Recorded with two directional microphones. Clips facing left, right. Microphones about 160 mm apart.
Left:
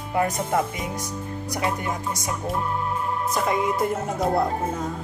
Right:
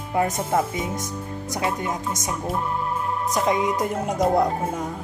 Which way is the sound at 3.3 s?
15° right (ahead or behind).